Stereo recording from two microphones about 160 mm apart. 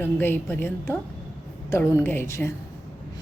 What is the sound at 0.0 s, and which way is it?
Speech, 15° left (ahead or behind).